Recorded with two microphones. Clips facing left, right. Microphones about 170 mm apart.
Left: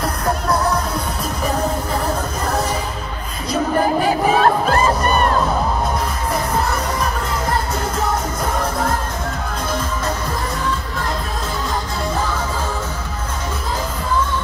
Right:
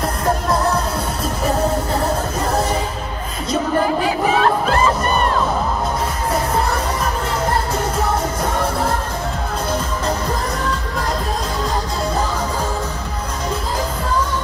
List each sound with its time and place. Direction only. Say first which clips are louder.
4.4 s crowd: left 1 dB; 45° left (ahead or behind)